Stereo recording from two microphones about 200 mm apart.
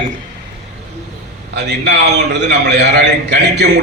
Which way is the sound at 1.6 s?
55° right (ahead or behind).